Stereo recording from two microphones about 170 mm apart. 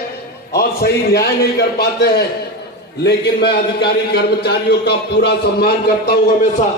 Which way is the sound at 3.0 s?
85° left.